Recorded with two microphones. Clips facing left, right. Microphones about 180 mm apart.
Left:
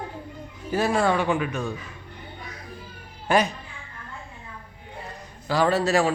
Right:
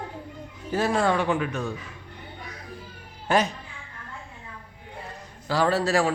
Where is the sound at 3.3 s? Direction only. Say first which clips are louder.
Left 1 dB; 10° left (ahead or behind).